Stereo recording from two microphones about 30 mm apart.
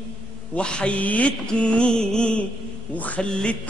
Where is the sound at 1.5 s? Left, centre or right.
Left.